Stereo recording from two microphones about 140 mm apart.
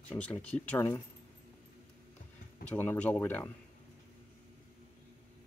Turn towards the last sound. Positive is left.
turn(degrees=15)  # may be behind; listen again after turning